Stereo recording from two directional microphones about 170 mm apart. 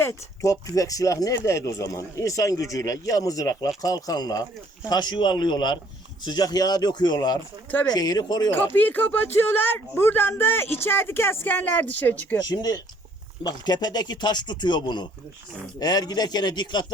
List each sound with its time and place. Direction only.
0.0 s speech: 20° left (ahead or behind)
8.4 s a man's voice: 10° left (ahead or behind)
12.4 s speech: 25° left (ahead or behind)